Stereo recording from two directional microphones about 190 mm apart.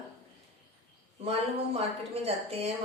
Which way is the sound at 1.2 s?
35° right (ahead or behind).